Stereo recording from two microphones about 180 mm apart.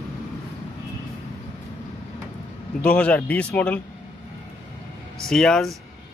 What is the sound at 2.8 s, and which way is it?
A man's voice, 5° left (ahead or behind).